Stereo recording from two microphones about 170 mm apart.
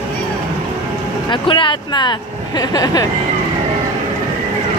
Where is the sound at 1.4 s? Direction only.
30° left (ahead or behind).